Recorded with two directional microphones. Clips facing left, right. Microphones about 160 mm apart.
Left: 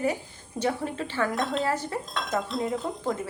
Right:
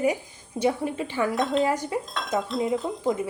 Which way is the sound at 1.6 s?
15° right (ahead or behind).